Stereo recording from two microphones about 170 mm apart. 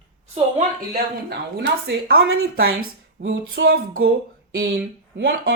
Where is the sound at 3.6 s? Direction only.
65° right (ahead or behind).